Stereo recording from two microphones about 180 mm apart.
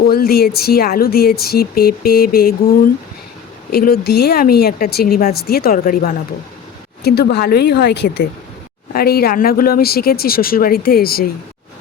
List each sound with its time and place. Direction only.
0.0 s speech: 55° left (ahead or behind)
7.0 s speech: 60° left (ahead or behind)
8.9 s speech: 60° left (ahead or behind)